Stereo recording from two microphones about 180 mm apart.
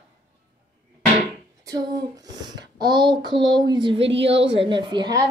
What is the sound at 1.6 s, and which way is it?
A child's voice, 20° right (ahead or behind).